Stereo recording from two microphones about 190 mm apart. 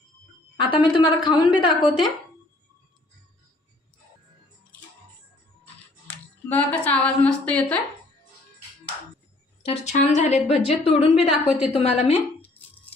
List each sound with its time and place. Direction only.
0.5 s a woman's voice: 25° left (ahead or behind)
6.1 s a woman's voice: 10° left (ahead or behind)
9.6 s a woman's voice: 35° left (ahead or behind)
11.3 s a woman's voice: 5° right (ahead or behind)
11.7 s a woman's voice: 30° left (ahead or behind)